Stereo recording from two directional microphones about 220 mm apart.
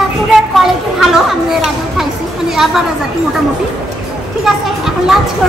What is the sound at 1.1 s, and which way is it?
Chatter, centre (ahead or behind).